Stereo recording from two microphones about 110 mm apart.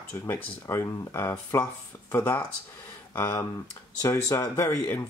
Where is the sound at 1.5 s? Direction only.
35° left (ahead or behind).